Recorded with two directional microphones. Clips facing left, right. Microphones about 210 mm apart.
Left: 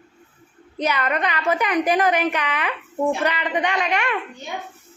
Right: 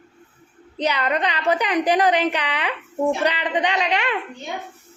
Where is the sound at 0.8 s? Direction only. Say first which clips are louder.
Right 1 dB; 15° right (ahead or behind).